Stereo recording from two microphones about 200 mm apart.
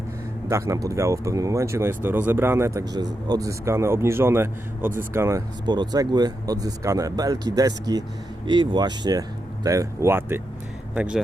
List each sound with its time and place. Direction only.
0.4 s a man's voice: 15° right (ahead or behind)